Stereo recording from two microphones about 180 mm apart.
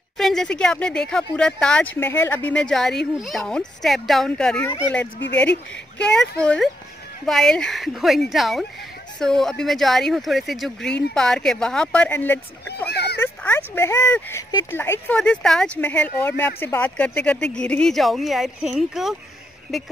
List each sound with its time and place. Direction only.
0.2 s speech: 5° left (ahead or behind)
4.6 s speech: 15° left (ahead or behind)
12.9 s a sound: 65° left (ahead or behind)
13.2 s speech: 10° left (ahead or behind)